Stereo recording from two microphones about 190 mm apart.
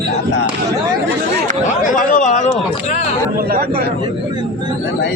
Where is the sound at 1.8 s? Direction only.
40° left (ahead or behind).